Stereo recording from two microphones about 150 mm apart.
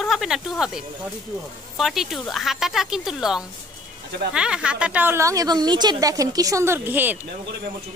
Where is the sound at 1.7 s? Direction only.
Centre (ahead or behind).